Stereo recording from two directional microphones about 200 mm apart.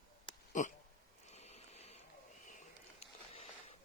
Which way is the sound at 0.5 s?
35° left (ahead or behind).